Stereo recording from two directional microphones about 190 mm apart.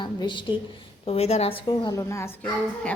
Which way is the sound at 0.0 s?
25° left (ahead or behind).